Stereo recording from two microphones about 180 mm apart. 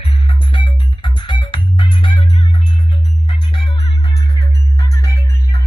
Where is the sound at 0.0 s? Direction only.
30° left (ahead or behind).